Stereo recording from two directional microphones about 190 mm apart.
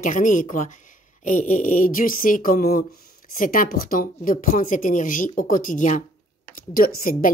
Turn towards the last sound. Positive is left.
turn(degrees=50)  # may be behind; listen again after turning